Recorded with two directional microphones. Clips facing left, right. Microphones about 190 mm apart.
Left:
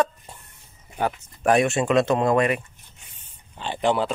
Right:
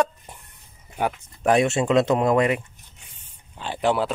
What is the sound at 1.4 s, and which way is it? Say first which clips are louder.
Speech: even; 20° right (ahead or behind).